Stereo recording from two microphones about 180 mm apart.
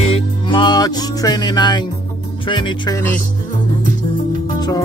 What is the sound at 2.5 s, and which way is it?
Speech, 25° left (ahead or behind).